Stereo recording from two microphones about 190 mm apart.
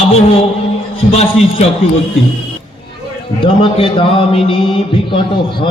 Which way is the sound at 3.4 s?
30° left (ahead or behind).